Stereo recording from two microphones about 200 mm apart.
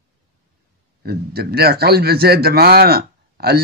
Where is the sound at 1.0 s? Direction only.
50° right (ahead or behind).